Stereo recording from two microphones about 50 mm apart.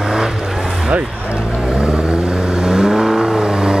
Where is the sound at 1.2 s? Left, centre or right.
Right.